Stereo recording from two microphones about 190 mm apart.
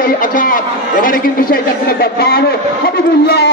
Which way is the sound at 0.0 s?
45° left (ahead or behind).